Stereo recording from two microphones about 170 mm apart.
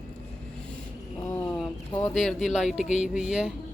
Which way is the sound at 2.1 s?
Centre (ahead or behind).